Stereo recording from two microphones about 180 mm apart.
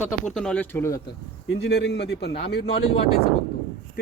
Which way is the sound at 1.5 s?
70° left (ahead or behind).